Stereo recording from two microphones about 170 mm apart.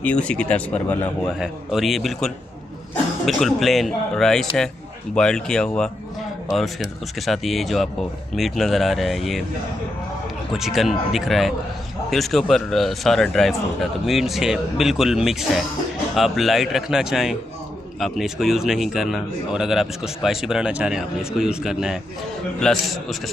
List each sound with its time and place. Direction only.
0.0 s a man's voice: 5° left (ahead or behind)
10.6 s a man's voice: centre (ahead or behind)